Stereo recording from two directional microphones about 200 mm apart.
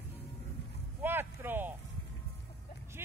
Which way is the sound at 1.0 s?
10° right (ahead or behind).